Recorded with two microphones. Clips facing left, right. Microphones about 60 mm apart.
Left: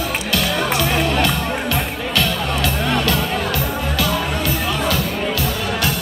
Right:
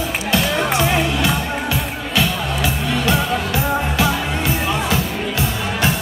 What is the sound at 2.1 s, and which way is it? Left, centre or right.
Music, centre.